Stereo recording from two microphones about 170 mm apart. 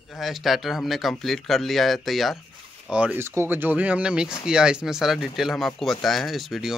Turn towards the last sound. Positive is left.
turn(degrees=0)  # may be behind; listen again after turning